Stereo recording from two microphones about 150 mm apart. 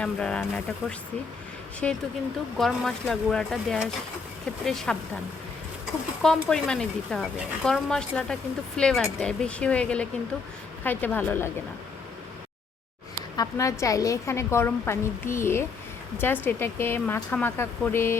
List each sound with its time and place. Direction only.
0.0 s speech: 5° left (ahead or behind)
6.2 s speech: 5° left (ahead or behind)
13.3 s a woman's voice: 25° left (ahead or behind)